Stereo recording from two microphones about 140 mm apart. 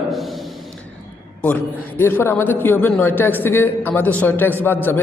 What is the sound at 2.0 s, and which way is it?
A man's voice, 15° left (ahead or behind).